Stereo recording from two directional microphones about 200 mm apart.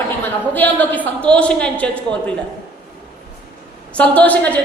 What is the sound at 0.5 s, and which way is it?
A woman's voice, 10° left (ahead or behind).